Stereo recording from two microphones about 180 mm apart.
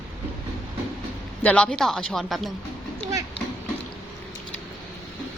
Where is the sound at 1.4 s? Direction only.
5° left (ahead or behind).